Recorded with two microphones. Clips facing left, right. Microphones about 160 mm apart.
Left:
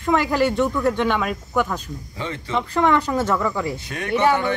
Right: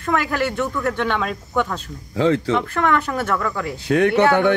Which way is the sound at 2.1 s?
90° right.